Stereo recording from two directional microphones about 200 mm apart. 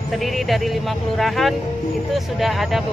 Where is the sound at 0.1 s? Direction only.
Centre (ahead or behind).